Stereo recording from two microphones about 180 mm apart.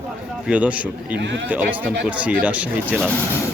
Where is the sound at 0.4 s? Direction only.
5° right (ahead or behind).